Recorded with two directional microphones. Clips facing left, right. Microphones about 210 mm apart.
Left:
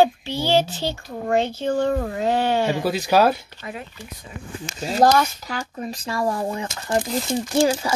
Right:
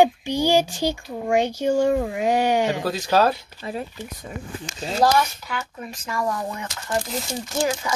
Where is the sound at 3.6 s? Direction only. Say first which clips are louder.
Right 4 dB; 35° right (ahead or behind).